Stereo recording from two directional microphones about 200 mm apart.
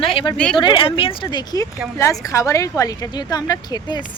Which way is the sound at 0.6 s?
25° left (ahead or behind).